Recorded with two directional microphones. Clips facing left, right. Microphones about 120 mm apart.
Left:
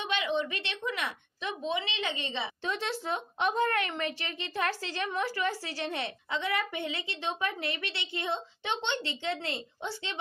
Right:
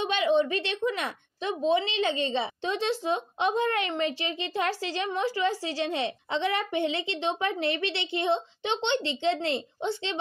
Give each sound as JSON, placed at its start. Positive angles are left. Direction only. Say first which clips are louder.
{"t": 0.0, "sound": "a woman's voice", "louder": "right 7 dB", "side_deg": -35}
{"t": 2.6, "sound": "speech", "louder": "right 5 dB", "side_deg": -20}